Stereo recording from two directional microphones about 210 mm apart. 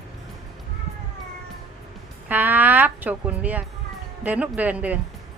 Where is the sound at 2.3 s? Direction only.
10° right (ahead or behind).